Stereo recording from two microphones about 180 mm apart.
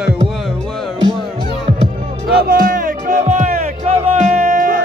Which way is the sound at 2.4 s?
55° right (ahead or behind).